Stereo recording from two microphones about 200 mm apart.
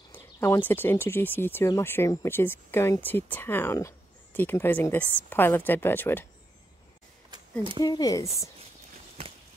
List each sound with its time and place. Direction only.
0.1 s a sound: 15° left (ahead or behind)
0.7 s speech: 10° left (ahead or behind)
7.8 s speech: 20° left (ahead or behind)